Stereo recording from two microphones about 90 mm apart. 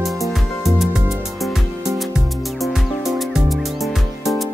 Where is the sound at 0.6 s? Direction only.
Centre (ahead or behind).